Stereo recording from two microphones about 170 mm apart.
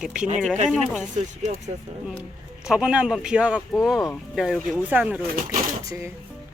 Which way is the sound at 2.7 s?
5° right (ahead or behind).